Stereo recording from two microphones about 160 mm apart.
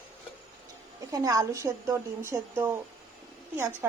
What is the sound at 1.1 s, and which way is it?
A woman's voice, 20° right (ahead or behind).